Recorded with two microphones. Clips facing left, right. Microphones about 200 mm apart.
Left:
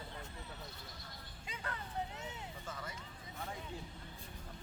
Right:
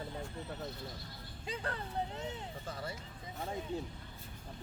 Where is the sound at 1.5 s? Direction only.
35° right (ahead or behind).